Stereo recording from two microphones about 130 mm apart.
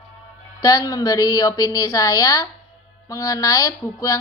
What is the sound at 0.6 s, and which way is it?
A woman's voice, 30° left (ahead or behind).